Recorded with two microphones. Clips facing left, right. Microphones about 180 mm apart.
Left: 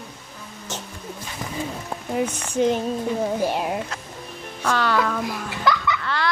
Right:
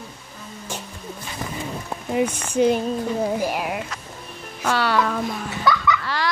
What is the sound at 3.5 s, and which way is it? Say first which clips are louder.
Speech: left 1 dB; 30° left (ahead or behind).